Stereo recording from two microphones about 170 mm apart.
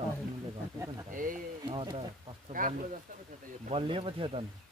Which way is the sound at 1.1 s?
55° right (ahead or behind).